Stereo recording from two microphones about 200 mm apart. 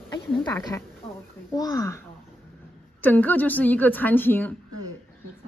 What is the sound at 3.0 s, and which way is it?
A woman's voice, 10° left (ahead or behind).